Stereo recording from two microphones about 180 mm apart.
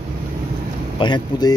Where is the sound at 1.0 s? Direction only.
25° left (ahead or behind).